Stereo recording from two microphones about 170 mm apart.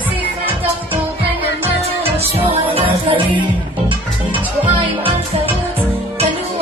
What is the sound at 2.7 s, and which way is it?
Music, 30° right (ahead or behind).